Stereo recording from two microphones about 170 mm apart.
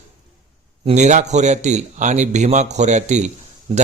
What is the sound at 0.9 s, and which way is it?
Speech, 45° right (ahead or behind).